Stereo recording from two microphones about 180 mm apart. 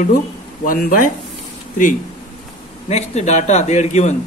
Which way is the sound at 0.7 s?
50° left (ahead or behind).